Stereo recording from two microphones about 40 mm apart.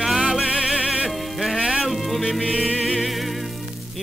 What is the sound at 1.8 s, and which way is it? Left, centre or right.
Music, centre.